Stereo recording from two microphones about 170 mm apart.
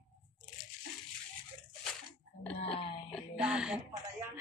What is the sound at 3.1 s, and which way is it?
Music, centre (ahead or behind).